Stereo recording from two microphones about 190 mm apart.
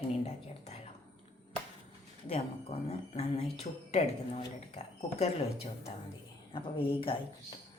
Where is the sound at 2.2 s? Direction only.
35° left (ahead or behind).